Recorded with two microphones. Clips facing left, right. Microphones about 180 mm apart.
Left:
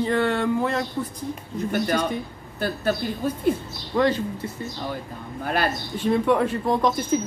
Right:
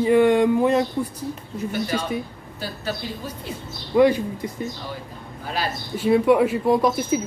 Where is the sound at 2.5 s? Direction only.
55° left (ahead or behind).